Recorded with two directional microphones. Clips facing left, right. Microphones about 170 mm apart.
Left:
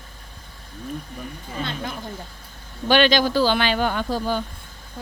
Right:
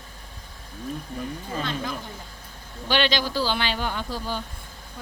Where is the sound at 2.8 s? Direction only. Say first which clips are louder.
Left 6 dB; 50° left (ahead or behind).